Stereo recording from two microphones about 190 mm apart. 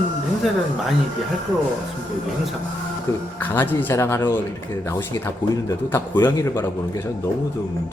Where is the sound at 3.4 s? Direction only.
10° left (ahead or behind).